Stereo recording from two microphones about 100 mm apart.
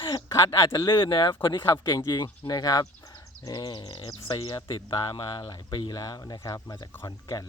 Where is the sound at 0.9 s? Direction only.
55° left (ahead or behind).